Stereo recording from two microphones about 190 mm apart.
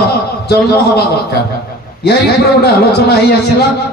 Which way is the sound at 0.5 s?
60° left (ahead or behind).